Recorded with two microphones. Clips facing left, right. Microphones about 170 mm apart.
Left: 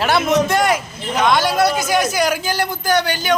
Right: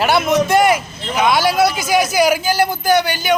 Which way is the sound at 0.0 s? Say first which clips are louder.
Right 1 dB; centre (ahead or behind).